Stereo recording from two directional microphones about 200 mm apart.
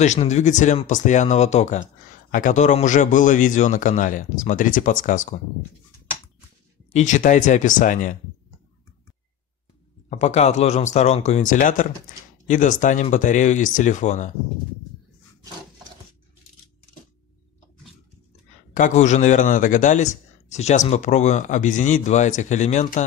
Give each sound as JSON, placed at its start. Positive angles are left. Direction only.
{"t": 0.0, "sound": "a man's voice", "side_deg": 35}
{"t": 6.9, "sound": "a man's voice", "side_deg": 35}
{"t": 10.0, "sound": "a man's voice", "side_deg": 35}
{"t": 18.7, "sound": "a man's voice", "side_deg": 40}